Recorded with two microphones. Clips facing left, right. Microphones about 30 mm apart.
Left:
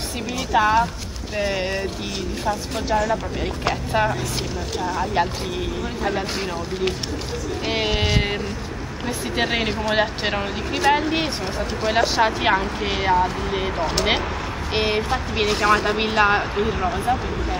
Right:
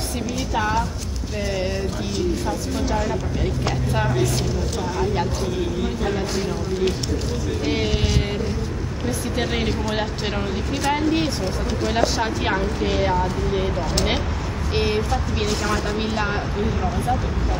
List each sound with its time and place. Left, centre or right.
0.6 s speech: left
3.6 s speech: centre
7.6 s speech: left